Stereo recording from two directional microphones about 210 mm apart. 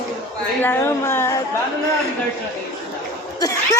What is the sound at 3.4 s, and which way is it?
Cough, 15° left (ahead or behind).